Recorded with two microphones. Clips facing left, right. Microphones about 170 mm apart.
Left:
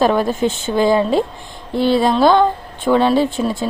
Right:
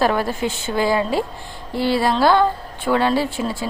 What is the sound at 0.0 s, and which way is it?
A woman's voice, 20° left (ahead or behind).